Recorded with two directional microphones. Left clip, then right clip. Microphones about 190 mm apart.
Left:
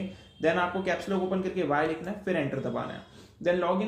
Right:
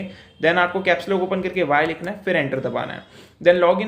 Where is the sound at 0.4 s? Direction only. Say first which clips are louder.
Right 9 dB; 15° right (ahead or behind).